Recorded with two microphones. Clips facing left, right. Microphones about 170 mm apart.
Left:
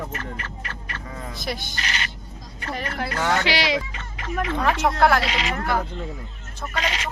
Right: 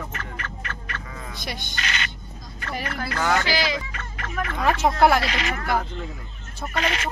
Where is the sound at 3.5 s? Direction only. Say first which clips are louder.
Left 2 dB; 70° left (ahead or behind).